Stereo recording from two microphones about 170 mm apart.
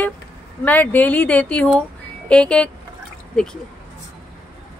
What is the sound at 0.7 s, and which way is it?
Speech, 10° left (ahead or behind).